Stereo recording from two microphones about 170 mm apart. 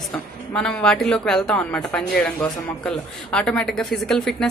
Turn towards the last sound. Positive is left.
turn(degrees=5)  # may be behind; listen again after turning